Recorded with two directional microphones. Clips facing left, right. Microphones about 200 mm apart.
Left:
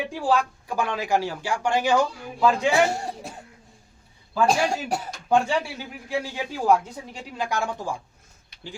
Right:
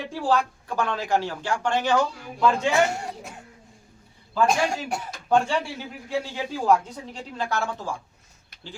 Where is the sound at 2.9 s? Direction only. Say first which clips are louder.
Left 2 dB; 35° left (ahead or behind).